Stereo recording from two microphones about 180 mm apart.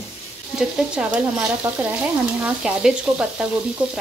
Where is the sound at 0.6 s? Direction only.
5° right (ahead or behind).